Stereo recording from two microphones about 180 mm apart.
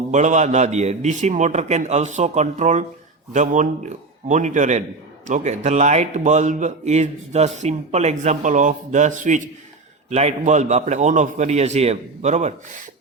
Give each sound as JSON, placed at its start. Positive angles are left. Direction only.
{"t": 0.1, "sound": "a man's voice", "side_deg": -40}